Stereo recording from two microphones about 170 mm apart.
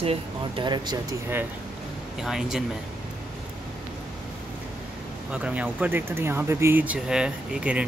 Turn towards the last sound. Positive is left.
turn(degrees=-5)  # may be behind; listen again after turning